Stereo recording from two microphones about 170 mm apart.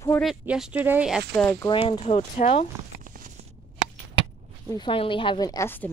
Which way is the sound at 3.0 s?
50° right (ahead or behind).